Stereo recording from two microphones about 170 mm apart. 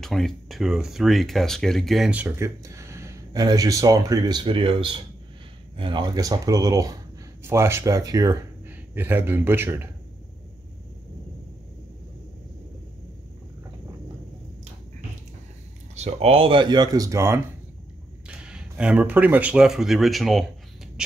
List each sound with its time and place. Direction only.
0.0 s speech: centre (ahead or behind)
15.9 s speech: 40° right (ahead or behind); by 17.4 s 15° right (ahead or behind)
18.3 s speech: 5° right (ahead or behind)